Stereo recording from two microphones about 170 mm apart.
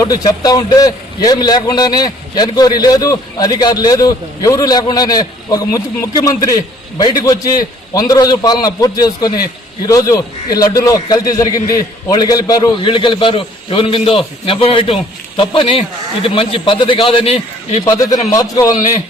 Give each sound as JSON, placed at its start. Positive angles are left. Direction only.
{"t": 0.0, "sound": "a man's voice", "side_deg": 20}
{"t": 17.8, "sound": "a man's voice", "side_deg": 20}